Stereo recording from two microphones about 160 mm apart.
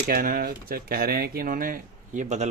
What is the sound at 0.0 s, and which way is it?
Speech, 65° right (ahead or behind).